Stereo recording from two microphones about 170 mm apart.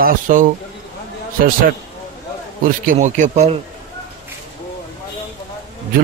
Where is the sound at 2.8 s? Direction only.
50° right (ahead or behind).